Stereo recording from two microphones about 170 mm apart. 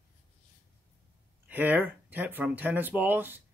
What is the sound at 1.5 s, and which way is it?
Speech, 10° right (ahead or behind).